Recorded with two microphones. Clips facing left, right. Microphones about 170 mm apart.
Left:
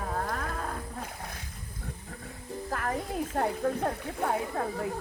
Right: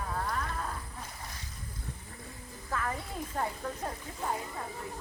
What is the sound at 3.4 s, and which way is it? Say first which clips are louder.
Speech: left 7 dB; 65° left (ahead or behind).